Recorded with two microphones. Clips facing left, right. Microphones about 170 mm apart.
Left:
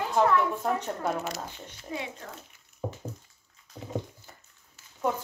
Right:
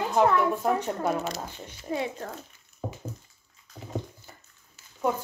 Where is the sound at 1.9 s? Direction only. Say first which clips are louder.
Right 6 dB; 40° right (ahead or behind).